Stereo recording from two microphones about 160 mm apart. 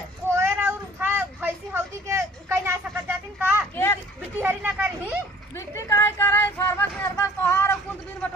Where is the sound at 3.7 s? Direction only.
15° left (ahead or behind).